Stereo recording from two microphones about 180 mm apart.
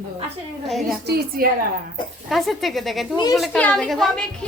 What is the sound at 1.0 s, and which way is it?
Speech, 55° right (ahead or behind).